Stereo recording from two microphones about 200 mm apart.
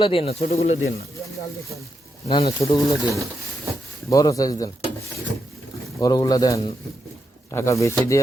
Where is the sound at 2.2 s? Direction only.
30° left (ahead or behind).